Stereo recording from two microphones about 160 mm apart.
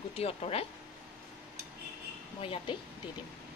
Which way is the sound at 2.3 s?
35° left (ahead or behind).